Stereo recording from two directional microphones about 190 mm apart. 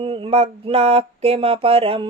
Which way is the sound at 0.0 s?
30° right (ahead or behind).